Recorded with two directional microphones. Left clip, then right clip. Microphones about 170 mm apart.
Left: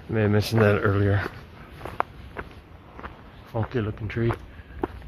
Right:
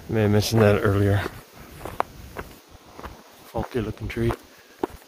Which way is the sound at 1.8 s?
15° right (ahead or behind).